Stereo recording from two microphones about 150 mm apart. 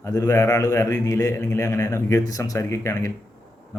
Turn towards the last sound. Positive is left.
turn(degrees=20)  # may be behind; listen again after turning